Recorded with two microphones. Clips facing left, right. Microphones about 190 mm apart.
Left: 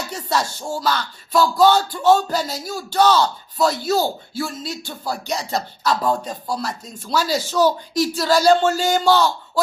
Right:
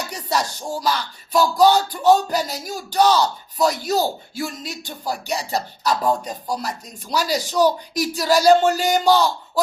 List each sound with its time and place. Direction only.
0.1 s music: 15° right (ahead or behind)